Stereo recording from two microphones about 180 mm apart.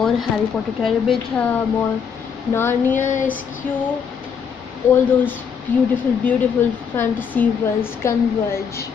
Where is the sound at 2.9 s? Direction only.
45° left (ahead or behind).